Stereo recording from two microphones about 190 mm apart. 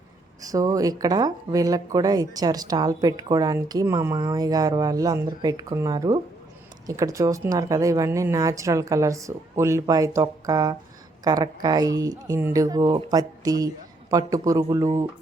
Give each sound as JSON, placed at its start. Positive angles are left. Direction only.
{"t": 0.4, "sound": "speech", "side_deg": -20}